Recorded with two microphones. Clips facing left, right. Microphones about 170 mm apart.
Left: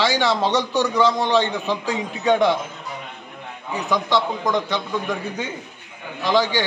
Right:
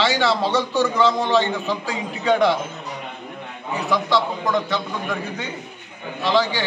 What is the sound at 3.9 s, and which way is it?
Speech, 20° left (ahead or behind).